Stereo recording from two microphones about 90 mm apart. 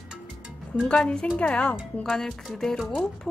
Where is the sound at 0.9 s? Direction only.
10° left (ahead or behind).